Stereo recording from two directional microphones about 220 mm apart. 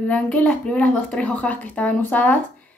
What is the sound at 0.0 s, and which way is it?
A woman's voice, 5° left (ahead or behind).